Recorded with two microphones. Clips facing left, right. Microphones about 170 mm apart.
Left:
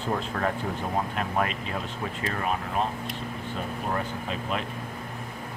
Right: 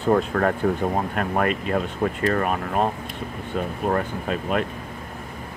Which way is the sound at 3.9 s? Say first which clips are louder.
Right 7 dB; 55° right (ahead or behind).